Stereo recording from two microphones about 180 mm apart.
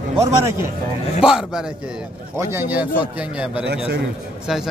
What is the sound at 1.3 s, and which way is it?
Speech, 5° right (ahead or behind).